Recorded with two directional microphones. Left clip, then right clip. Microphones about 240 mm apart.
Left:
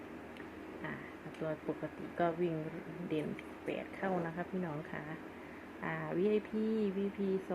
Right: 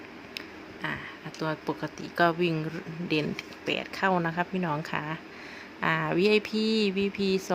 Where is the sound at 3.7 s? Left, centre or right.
Right.